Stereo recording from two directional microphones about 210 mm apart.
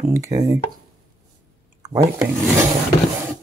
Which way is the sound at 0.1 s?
15° right (ahead or behind).